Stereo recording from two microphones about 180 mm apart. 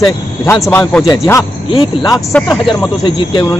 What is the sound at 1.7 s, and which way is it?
A man's voice, 25° left (ahead or behind).